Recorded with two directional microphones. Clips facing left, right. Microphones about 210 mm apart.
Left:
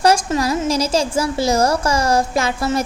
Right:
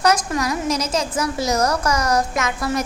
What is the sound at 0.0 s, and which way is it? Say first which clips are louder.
A woman's voice: left 3 dB; 30° left (ahead or behind).